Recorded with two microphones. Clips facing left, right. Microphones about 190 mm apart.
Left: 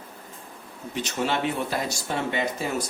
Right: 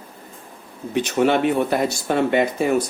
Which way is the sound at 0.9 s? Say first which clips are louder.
Right 9 dB; 55° right (ahead or behind).